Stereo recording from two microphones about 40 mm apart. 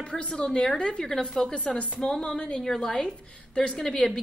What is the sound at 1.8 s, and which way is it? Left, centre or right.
Speech, left.